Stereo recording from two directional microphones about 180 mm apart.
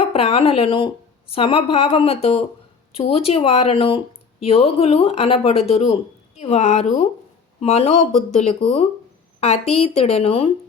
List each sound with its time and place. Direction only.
0.0 s speech: 30° left (ahead or behind)